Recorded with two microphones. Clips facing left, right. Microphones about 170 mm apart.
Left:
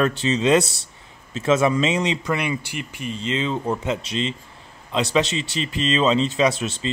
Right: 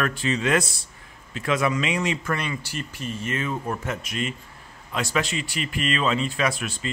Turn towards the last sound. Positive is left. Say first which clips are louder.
# left 5 dB
turn(degrees=25)  # may be behind; listen again after turning